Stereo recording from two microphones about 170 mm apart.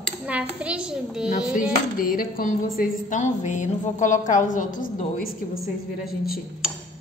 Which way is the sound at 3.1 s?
45° left (ahead or behind).